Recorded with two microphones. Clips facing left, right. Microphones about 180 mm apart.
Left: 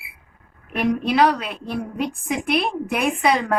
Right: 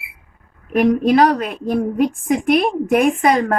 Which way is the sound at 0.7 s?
45° right (ahead or behind).